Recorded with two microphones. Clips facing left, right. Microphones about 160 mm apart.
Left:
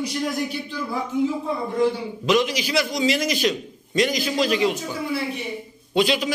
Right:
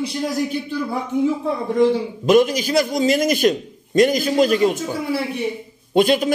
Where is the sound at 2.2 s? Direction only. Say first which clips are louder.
Right 6 dB; 50° right (ahead or behind).